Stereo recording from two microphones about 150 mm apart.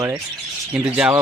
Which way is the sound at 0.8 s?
5° right (ahead or behind).